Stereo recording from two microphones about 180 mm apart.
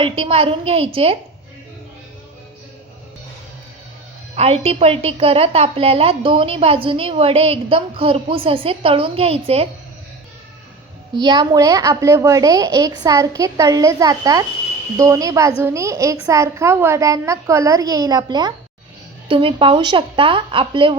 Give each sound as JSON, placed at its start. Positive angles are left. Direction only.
{"t": 0.0, "sound": "a woman's voice", "side_deg": -30}
{"t": 4.4, "sound": "a woman's voice", "side_deg": -35}
{"t": 11.1, "sound": "a woman's voice", "side_deg": -25}